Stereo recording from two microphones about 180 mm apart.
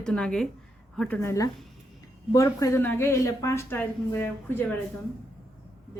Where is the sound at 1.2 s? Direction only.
15° left (ahead or behind).